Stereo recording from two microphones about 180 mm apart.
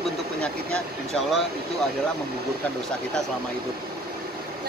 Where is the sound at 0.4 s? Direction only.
5° left (ahead or behind).